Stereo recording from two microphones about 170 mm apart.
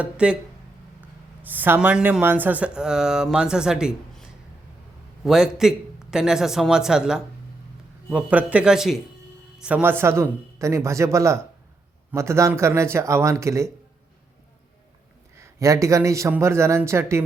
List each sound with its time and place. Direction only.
0.0 s speech: 5° right (ahead or behind)
1.4 s speech: 10° right (ahead or behind)
5.2 s a man's voice: 5° right (ahead or behind)
15.4 s speech: 15° right (ahead or behind)